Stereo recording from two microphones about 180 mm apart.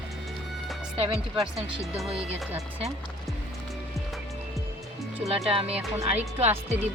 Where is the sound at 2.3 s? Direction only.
35° right (ahead or behind).